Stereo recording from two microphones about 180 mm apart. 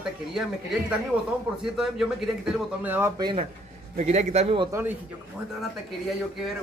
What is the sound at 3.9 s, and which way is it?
Speech, 35° right (ahead or behind).